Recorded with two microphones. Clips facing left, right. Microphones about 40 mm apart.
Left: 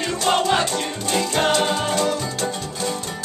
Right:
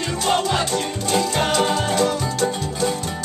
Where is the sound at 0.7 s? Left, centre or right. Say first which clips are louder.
Right 2 dB; centre.